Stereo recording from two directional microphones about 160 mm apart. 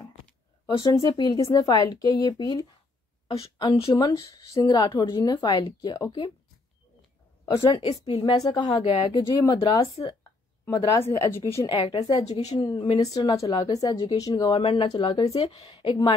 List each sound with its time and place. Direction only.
0.7 s a woman's voice: 30° left (ahead or behind)
7.6 s a woman's voice: 30° left (ahead or behind)
9.4 s a woman's voice: 25° left (ahead or behind); by 12.5 s 40° left (ahead or behind)
12.5 s a woman's voice: 30° left (ahead or behind)
13.1 s speech: 25° left (ahead or behind)
14.6 s a woman's voice: 40° left (ahead or behind)